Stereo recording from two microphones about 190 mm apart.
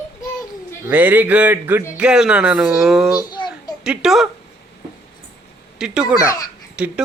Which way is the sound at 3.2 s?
20° left (ahead or behind).